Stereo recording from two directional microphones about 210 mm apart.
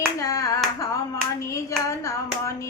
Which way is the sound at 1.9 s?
15° left (ahead or behind).